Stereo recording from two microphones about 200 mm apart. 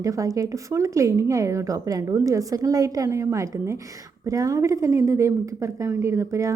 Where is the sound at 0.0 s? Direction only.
15° right (ahead or behind).